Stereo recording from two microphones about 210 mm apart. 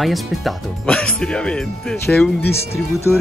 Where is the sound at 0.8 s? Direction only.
5° left (ahead or behind).